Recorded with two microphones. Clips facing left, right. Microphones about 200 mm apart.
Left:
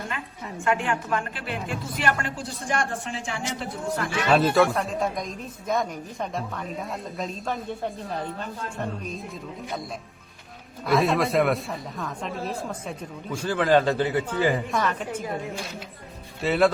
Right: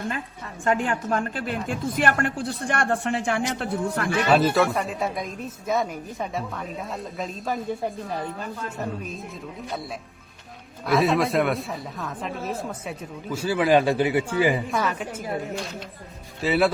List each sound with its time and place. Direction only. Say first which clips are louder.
0.6 s a woman's voice: right 2 dB; 35° right (ahead or behind); by 4.1 s 60° right (ahead or behind)
4.3 s speech: left 1 dB; centre (ahead or behind)
10.8 s speech: right 1 dB; centre (ahead or behind)
16.4 s speech: even; 5° right (ahead or behind)